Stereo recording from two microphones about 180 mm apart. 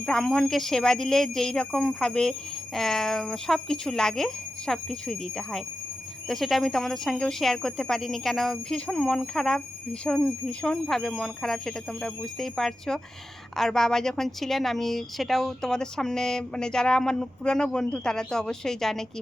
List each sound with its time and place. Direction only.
0.0 s speech: 5° left (ahead or behind)